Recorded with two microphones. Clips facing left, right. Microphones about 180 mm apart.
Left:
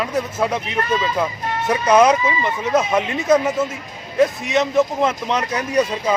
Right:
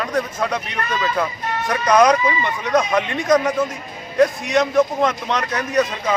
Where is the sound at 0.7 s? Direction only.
25° left (ahead or behind).